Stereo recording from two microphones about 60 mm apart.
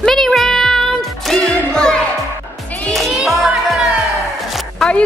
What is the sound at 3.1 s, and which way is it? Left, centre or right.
Music, centre.